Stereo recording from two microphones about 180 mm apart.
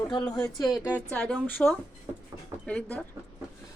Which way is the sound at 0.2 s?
5° left (ahead or behind).